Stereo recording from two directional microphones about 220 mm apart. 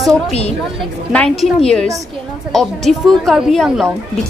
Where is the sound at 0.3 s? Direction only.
30° left (ahead or behind).